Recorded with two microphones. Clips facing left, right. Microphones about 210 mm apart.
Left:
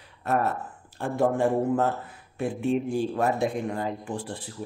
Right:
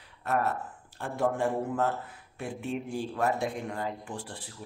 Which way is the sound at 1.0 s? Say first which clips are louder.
Left 5 dB; 30° left (ahead or behind).